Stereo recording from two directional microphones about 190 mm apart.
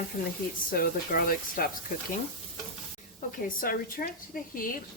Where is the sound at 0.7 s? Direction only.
50° left (ahead or behind).